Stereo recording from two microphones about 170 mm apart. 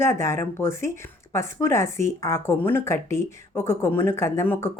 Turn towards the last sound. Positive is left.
turn(degrees=15)  # may be behind; listen again after turning